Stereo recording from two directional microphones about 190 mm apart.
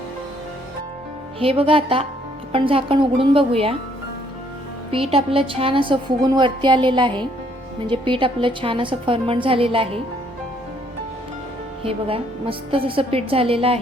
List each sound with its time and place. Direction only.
1.4 s a woman's voice: 30° right (ahead or behind)
4.9 s a woman's voice: 30° right (ahead or behind)
11.8 s a woman's voice: 30° right (ahead or behind)